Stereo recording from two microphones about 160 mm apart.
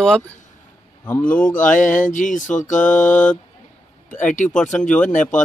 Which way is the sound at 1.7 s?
55° left (ahead or behind).